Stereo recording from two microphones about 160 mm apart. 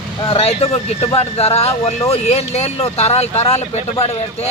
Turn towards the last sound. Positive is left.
turn(degrees=40)  # may be behind; listen again after turning